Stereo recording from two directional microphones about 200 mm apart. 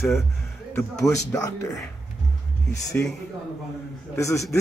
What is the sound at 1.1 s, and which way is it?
Speech, 15° left (ahead or behind).